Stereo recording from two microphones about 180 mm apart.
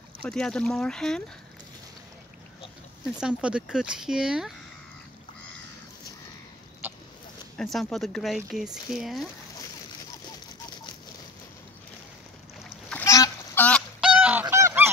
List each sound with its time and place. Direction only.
0.2 s speech: 5° left (ahead or behind)
3.2 s speech: 5° right (ahead or behind)
6.8 s a sound: 10° right (ahead or behind)
7.5 s speech: centre (ahead or behind)
12.9 s goose: 15° left (ahead or behind)
14.0 s goose: 5° right (ahead or behind)